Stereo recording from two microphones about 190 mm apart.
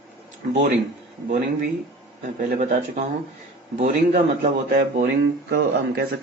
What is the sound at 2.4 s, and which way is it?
A man's voice, 40° right (ahead or behind).